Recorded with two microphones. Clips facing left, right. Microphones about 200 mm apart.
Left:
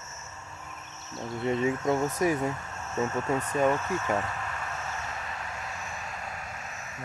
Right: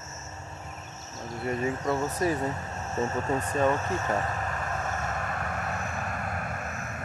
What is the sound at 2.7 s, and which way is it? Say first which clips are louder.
Speech: even; 35° right (ahead or behind).